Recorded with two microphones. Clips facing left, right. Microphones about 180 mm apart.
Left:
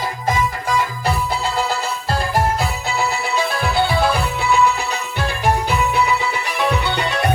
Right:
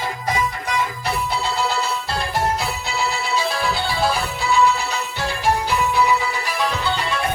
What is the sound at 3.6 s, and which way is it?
Music, 60° left (ahead or behind).